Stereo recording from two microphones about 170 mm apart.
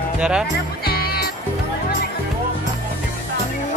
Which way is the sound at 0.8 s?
65° left (ahead or behind).